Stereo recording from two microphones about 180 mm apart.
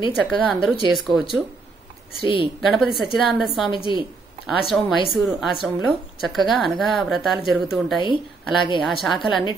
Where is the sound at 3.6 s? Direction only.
30° left (ahead or behind).